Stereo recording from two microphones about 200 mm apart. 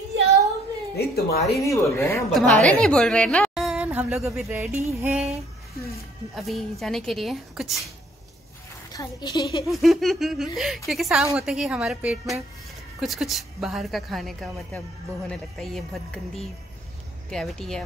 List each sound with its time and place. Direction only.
0.9 s speech: 50° left (ahead or behind)
1.6 s a woman's voice: 15° left (ahead or behind); by 5.3 s 10° right (ahead or behind)
6.3 s a woman's voice: centre (ahead or behind)
8.9 s a woman's voice: 20° left (ahead or behind)
9.7 s a woman's voice: centre (ahead or behind)